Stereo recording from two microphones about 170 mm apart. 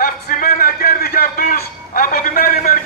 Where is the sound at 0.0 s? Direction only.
55° left (ahead or behind).